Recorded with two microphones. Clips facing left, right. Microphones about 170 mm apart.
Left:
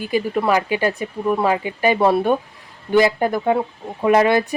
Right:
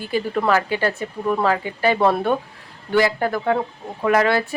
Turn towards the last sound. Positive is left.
turn(degrees=20)  # may be behind; listen again after turning